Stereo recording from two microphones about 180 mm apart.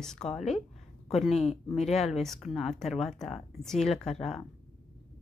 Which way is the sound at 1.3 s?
35° left (ahead or behind).